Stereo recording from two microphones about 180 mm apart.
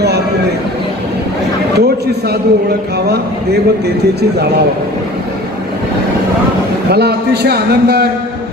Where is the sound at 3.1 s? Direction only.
65° right (ahead or behind).